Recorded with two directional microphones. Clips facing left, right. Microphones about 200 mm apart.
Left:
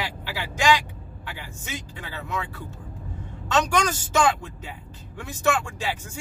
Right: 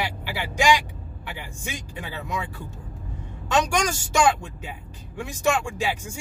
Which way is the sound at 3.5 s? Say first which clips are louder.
Even; 10° right (ahead or behind).